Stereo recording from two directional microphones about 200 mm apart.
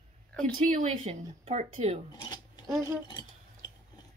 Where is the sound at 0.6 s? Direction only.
40° right (ahead or behind).